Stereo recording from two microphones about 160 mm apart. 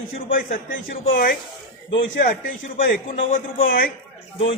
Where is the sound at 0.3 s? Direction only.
60° left (ahead or behind).